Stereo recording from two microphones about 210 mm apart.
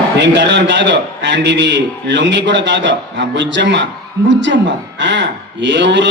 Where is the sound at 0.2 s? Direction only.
55° right (ahead or behind).